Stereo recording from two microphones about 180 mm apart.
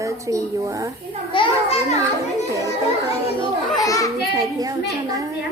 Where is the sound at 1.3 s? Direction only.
35° left (ahead or behind).